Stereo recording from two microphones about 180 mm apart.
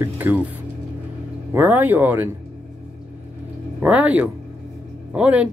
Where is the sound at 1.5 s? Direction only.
10° right (ahead or behind).